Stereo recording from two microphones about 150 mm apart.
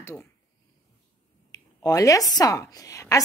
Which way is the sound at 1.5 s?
25° left (ahead or behind).